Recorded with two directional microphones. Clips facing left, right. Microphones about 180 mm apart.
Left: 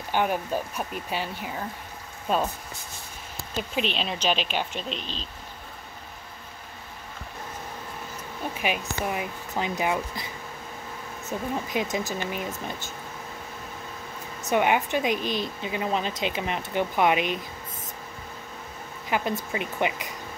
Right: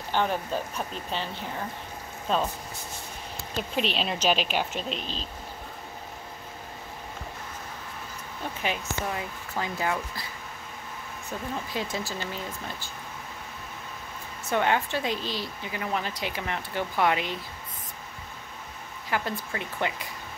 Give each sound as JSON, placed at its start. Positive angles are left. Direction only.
{"t": 0.1, "sound": "speech", "side_deg": 10}
{"t": 3.5, "sound": "speech", "side_deg": 0}
{"t": 5.0, "sound": "speech", "side_deg": -40}
{"t": 8.5, "sound": "a woman's voice", "side_deg": 15}
{"t": 14.5, "sound": "a woman's voice", "side_deg": 15}
{"t": 19.0, "sound": "a woman's voice", "side_deg": 20}